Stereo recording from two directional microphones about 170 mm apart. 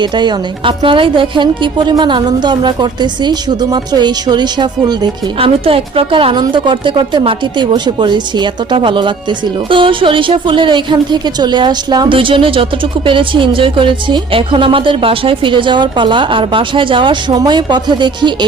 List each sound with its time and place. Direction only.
0.0 s a woman's voice: 25° right (ahead or behind)